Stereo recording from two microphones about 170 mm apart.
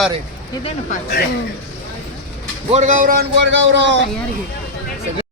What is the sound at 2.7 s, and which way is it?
Speech, 45° right (ahead or behind).